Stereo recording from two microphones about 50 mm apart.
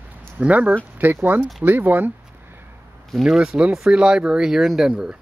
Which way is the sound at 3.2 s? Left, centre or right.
Centre.